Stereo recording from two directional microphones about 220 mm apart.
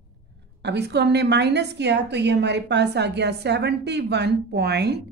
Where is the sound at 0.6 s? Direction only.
50° right (ahead or behind).